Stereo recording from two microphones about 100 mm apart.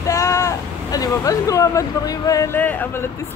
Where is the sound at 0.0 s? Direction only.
30° left (ahead or behind).